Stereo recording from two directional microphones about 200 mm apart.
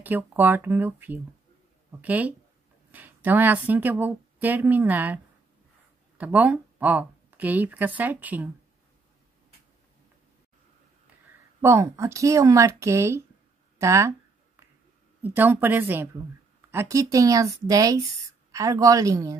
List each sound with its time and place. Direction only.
0.0 s speech: 10° right (ahead or behind)
11.6 s speech: 15° right (ahead or behind)
15.2 s speech: 10° right (ahead or behind)